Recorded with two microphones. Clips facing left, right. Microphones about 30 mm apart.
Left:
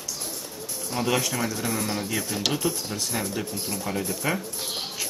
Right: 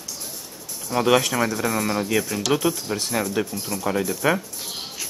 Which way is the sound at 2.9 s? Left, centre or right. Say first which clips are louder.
Right 5 dB; right.